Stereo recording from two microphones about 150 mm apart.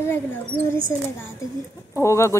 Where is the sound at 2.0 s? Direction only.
20° left (ahead or behind).